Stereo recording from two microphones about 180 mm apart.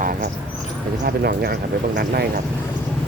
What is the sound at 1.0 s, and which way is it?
Speech, 60° right (ahead or behind).